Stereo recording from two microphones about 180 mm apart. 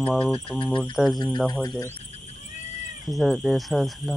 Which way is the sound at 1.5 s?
20° left (ahead or behind).